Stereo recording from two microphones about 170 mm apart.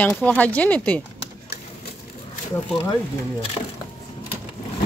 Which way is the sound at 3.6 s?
35° left (ahead or behind).